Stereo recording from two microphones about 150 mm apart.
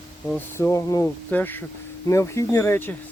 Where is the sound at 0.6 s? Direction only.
20° left (ahead or behind).